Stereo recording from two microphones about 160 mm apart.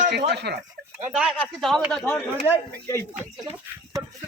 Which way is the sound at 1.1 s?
5° right (ahead or behind).